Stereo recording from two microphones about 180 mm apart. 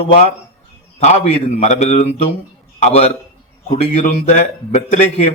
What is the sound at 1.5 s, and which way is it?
Speech, 40° left (ahead or behind).